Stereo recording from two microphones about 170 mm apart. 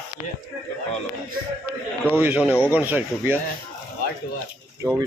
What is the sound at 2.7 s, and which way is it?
Speech, 10° right (ahead or behind).